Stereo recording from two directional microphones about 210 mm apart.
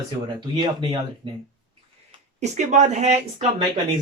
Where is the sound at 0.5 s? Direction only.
20° right (ahead or behind).